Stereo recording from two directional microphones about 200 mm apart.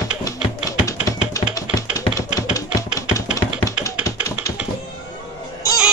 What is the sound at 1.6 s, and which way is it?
Tap, 15° left (ahead or behind).